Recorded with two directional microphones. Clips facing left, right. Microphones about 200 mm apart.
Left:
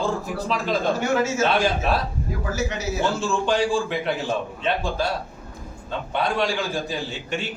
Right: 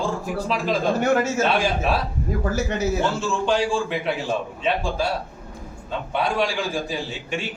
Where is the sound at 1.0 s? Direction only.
60° right (ahead or behind).